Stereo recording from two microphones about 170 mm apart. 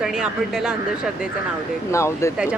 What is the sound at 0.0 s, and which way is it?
Speech, 5° right (ahead or behind).